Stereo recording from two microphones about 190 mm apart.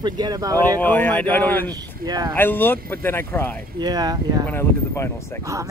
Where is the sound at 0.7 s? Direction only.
10° left (ahead or behind).